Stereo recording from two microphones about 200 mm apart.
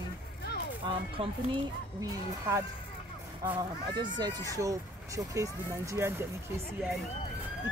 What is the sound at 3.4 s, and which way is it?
Speech, 25° right (ahead or behind).